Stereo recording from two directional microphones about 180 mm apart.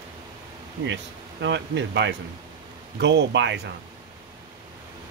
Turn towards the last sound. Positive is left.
turn(degrees=-75)  # may be behind; listen again after turning